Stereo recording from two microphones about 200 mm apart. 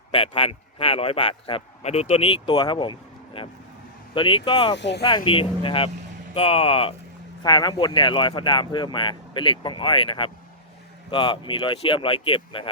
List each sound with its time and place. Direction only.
0.1 s a man's voice: 30° left (ahead or behind)
4.8 s speech: 60° left (ahead or behind)
5.0 s a man's voice: 25° left (ahead or behind)